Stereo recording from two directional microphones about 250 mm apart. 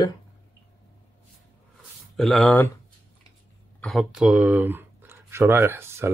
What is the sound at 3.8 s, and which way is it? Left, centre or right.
Speech, centre.